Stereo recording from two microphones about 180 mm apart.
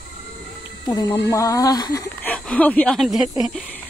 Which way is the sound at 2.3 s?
10° left (ahead or behind).